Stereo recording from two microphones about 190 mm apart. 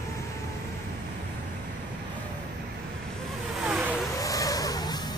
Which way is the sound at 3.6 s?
5° right (ahead or behind).